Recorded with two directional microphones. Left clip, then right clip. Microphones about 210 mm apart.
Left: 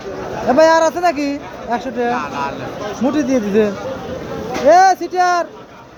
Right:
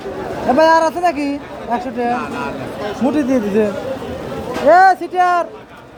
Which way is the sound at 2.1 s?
20° left (ahead or behind).